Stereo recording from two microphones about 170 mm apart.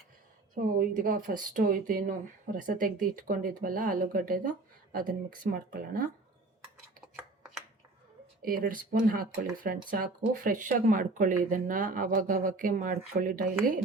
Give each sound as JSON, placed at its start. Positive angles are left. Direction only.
{"t": 0.5, "sound": "speech", "side_deg": -55}
{"t": 8.4, "sound": "speech", "side_deg": -55}